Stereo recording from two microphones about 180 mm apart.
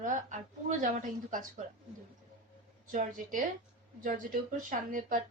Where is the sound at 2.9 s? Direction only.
50° right (ahead or behind).